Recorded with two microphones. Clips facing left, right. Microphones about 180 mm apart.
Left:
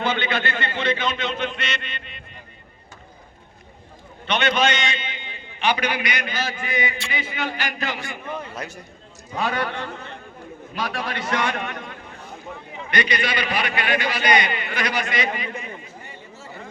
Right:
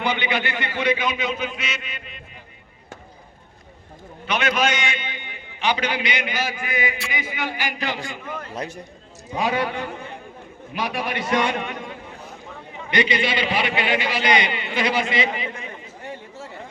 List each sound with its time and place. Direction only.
0.0 s a sound: 15° right (ahead or behind)
4.3 s a man's voice: 5° right (ahead or behind); by 8.8 s 30° right (ahead or behind)
9.3 s a man's voice: 15° right (ahead or behind)
11.3 s a man's voice: 20° right (ahead or behind)
12.9 s a man's voice: 20° right (ahead or behind)